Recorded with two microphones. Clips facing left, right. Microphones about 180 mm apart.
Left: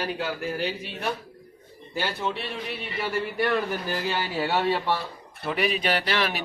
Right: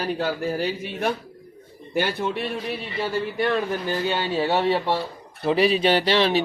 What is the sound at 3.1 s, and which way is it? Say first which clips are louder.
A man's voice: right 1 dB; 20° right (ahead or behind).